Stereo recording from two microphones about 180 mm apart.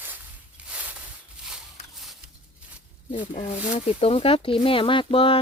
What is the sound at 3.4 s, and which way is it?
Speech, 35° left (ahead or behind).